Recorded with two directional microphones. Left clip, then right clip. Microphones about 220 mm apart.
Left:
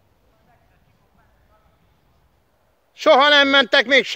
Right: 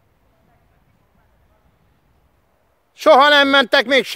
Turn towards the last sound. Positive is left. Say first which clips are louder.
# right 1 dB
turn(degrees=-20)  # may be behind; listen again after turning